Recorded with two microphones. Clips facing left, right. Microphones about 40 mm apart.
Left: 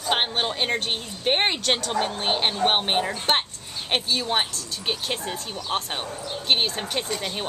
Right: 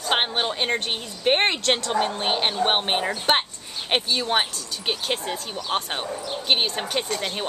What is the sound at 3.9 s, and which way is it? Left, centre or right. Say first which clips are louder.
A woman's voice: right 2 dB; centre.